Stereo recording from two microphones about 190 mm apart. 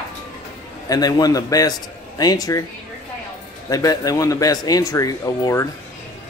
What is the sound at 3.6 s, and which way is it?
Speech, 20° left (ahead or behind).